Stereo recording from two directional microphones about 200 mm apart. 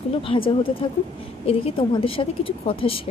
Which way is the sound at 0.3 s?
25° left (ahead or behind).